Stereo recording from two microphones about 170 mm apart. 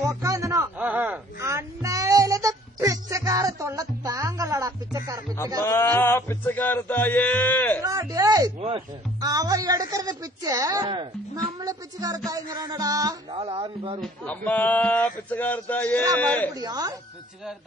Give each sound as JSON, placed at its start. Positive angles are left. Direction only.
{"t": 0.1, "sound": "a sound", "side_deg": -20}
{"t": 5.7, "sound": "speech", "side_deg": 15}
{"t": 7.8, "sound": "speech", "side_deg": -20}
{"t": 8.5, "sound": "speech", "side_deg": -35}
{"t": 9.2, "sound": "speech", "side_deg": -20}
{"t": 13.4, "sound": "speech", "side_deg": -35}
{"t": 14.0, "sound": "speech", "side_deg": 10}
{"t": 16.5, "sound": "speech", "side_deg": -20}